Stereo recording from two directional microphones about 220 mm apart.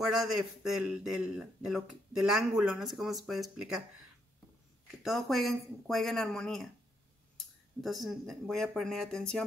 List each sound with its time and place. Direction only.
0.6 s speech: 5° right (ahead or behind)
5.0 s speech: centre (ahead or behind)